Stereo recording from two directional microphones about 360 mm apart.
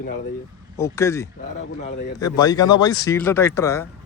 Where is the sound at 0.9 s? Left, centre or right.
Centre.